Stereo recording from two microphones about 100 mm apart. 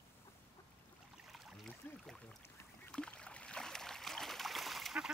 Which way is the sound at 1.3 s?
Centre (ahead or behind).